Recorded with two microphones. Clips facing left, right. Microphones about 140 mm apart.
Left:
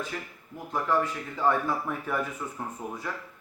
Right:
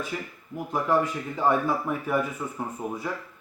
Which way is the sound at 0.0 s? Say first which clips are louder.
Right 3 dB; 10° right (ahead or behind).